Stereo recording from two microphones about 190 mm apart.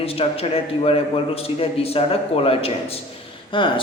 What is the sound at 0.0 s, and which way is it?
A man's voice, 30° left (ahead or behind).